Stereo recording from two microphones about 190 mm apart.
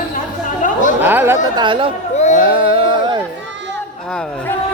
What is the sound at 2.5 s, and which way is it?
Music, 25° right (ahead or behind).